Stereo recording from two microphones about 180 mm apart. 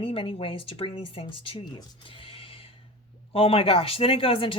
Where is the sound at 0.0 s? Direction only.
30° left (ahead or behind).